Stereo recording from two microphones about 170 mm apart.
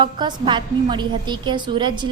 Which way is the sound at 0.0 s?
25° right (ahead or behind).